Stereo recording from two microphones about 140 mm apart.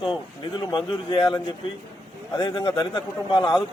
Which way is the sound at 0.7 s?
35° left (ahead or behind).